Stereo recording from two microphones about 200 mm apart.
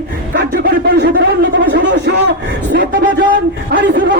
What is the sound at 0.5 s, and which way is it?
Speech, 55° right (ahead or behind).